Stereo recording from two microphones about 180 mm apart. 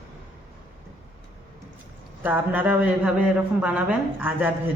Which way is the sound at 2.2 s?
10° right (ahead or behind).